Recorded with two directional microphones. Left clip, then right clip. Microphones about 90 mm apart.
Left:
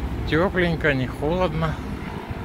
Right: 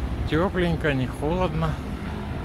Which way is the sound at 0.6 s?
20° right (ahead or behind).